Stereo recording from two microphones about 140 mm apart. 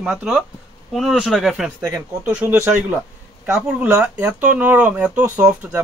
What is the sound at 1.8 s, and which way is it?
A man's voice, 20° right (ahead or behind).